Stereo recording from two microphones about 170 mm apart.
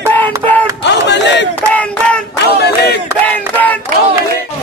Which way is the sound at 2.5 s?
70° left (ahead or behind).